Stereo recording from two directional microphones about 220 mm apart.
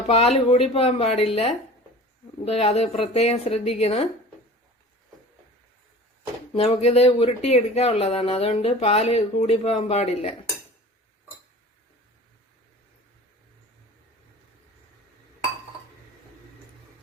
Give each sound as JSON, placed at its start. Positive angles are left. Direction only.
{"t": 0.1, "sound": "speech", "side_deg": 25}
{"t": 6.5, "sound": "speech", "side_deg": 25}